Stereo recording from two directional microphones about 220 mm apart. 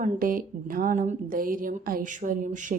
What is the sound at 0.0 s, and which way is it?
A woman's voice, 40° right (ahead or behind).